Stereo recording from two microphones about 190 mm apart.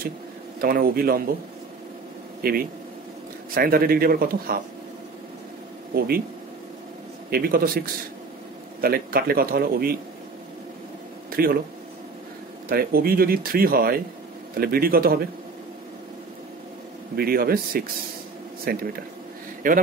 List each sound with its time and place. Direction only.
0.6 s speech: 50° right (ahead or behind)
2.4 s speech: 50° right (ahead or behind)
5.9 s speech: 55° right (ahead or behind)
7.2 s speech: 55° right (ahead or behind)
11.4 s speech: 50° right (ahead or behind)
12.6 s speech: 50° right (ahead or behind)
17.1 s speech: 55° right (ahead or behind)